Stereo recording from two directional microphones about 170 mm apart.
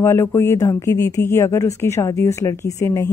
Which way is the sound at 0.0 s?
15° left (ahead or behind).